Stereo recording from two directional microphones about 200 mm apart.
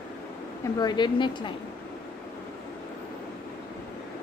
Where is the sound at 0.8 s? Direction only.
20° left (ahead or behind).